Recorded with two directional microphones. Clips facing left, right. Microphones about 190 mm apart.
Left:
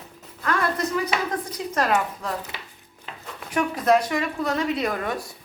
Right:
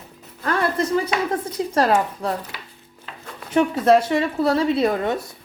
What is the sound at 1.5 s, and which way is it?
Speech, 30° right (ahead or behind).